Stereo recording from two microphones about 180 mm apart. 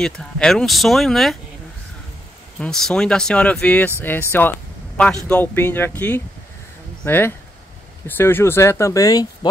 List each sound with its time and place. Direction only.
0.0 s speech: 5° left (ahead or behind)
2.6 s speech: 5° left (ahead or behind); by 9.5 s 20° left (ahead or behind)